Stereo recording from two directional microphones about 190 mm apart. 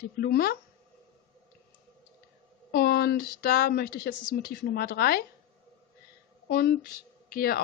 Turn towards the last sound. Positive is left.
turn(degrees=50)  # may be behind; listen again after turning